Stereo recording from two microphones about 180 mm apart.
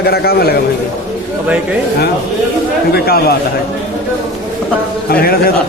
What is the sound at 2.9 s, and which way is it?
Speech, 60° left (ahead or behind).